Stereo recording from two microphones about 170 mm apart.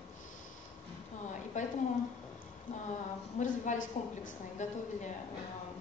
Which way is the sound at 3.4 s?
50° left (ahead or behind).